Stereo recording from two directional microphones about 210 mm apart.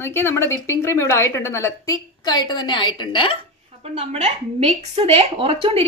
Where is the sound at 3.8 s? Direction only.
30° right (ahead or behind).